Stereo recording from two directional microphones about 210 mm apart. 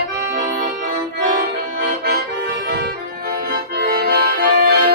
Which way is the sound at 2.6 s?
50° right (ahead or behind).